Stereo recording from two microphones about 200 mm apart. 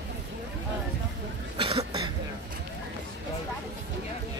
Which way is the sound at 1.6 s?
25° right (ahead or behind).